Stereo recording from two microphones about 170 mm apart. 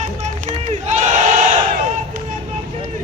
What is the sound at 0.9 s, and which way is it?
Battle cry, 45° right (ahead or behind).